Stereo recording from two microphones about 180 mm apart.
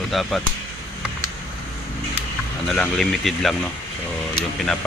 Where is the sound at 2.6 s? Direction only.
5° left (ahead or behind).